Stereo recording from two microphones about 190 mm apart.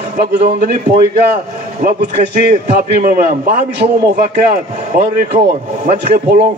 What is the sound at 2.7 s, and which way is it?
A man's voice, 50° right (ahead or behind).